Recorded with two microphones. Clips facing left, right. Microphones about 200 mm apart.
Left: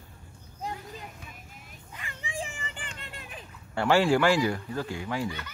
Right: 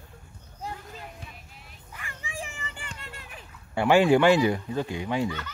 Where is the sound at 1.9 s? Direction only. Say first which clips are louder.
Left 1 dB; 20° left (ahead or behind).